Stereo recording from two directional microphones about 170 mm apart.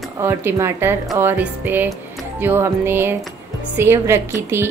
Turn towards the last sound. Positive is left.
turn(degrees=-15)  # may be behind; listen again after turning